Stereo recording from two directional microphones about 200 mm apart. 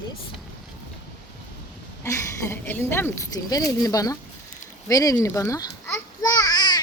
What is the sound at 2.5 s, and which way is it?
Speech, 10° left (ahead or behind).